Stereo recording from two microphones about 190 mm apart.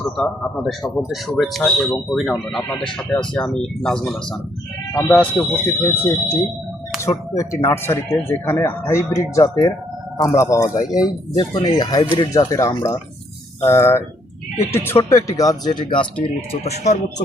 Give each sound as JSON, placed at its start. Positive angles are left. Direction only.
{"t": 0.2, "sound": "a man's voice", "side_deg": 0}
{"t": 16.2, "sound": "speech", "side_deg": 30}